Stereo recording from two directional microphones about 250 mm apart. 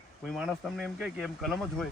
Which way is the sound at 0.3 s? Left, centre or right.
Centre.